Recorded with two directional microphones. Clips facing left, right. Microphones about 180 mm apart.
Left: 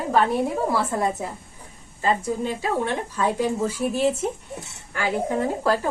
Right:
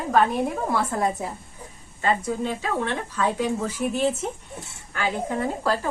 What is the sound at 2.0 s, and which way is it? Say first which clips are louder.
Speech: left 1 dB; 10° left (ahead or behind).